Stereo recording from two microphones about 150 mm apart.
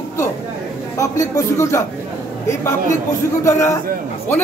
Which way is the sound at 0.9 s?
20° left (ahead or behind).